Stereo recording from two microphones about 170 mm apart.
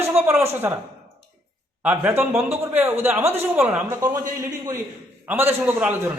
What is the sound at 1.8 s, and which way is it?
A man's voice, 10° right (ahead or behind).